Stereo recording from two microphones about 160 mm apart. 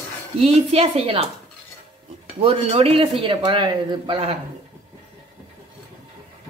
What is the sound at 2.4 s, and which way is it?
A woman's voice, 35° right (ahead or behind).